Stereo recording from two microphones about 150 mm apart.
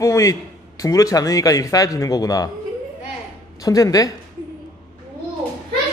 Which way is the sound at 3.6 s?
25° left (ahead or behind).